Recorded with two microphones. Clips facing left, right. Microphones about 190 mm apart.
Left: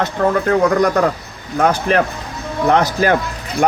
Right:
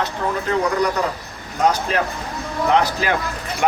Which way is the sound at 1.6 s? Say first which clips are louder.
Left 4 dB; 55° left (ahead or behind).